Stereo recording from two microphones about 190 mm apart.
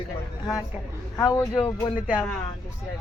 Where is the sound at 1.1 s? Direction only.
15° left (ahead or behind).